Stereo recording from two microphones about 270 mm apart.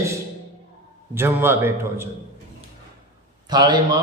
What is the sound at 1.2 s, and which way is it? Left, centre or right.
Speech, centre.